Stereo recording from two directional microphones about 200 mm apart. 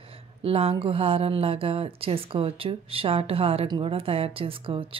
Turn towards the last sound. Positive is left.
turn(degrees=-25)  # may be behind; listen again after turning